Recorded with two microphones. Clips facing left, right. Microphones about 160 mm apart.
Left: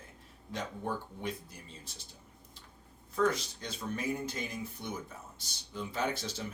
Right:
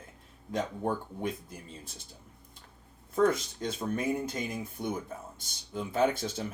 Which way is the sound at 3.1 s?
50° right (ahead or behind).